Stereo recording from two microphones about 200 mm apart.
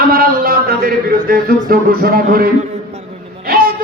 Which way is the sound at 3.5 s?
45° right (ahead or behind).